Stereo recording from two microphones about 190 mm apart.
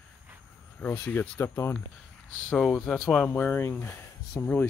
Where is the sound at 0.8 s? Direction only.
10° left (ahead or behind).